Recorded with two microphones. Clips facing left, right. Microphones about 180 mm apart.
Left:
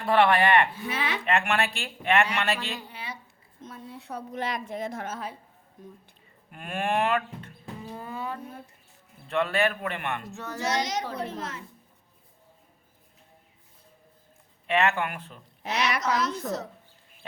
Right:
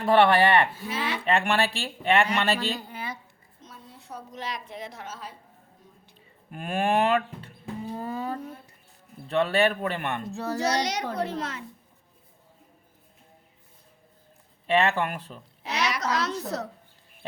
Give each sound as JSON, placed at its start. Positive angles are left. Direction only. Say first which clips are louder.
{"t": 0.1, "sound": "a child's voice", "louder": "right 2 dB", "side_deg": -35}
{"t": 0.9, "sound": "a woman's voice", "louder": "even", "side_deg": 60}
{"t": 1.2, "sound": "a child's voice", "louder": "right 2 dB", "side_deg": -30}
{"t": 3.6, "sound": "a woman's voice", "louder": "left 7 dB", "side_deg": 60}
{"t": 6.5, "sound": "a child's voice", "louder": "right 3 dB", "side_deg": -35}
{"t": 10.8, "sound": "a child's voice", "louder": "right 2 dB", "side_deg": -70}
{"t": 14.7, "sound": "a child's voice", "louder": "right 2 dB", "side_deg": -30}
{"t": 15.6, "sound": "a woman's voice", "louder": "left 1 dB", "side_deg": 60}
{"t": 16.0, "sound": "a child's voice", "louder": "left 1 dB", "side_deg": -70}